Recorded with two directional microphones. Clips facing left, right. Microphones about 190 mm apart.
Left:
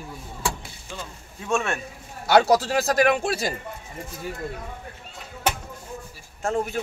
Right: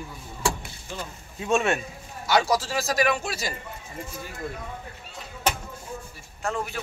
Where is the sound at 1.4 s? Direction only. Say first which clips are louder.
Right 2 dB; 15° right (ahead or behind).